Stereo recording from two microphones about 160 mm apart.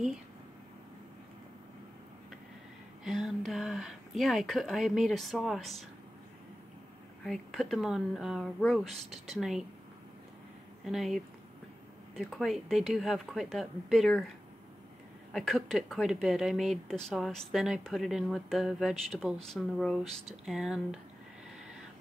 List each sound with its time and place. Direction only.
3.0 s a woman's voice: centre (ahead or behind)
7.2 s a woman's voice: centre (ahead or behind)
10.9 s a woman's voice: centre (ahead or behind)
15.3 s a woman's voice: centre (ahead or behind)